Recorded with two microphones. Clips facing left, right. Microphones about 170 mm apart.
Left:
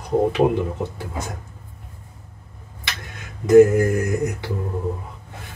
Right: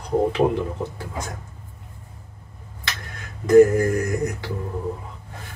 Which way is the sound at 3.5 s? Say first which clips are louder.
Left 1 dB; 10° left (ahead or behind).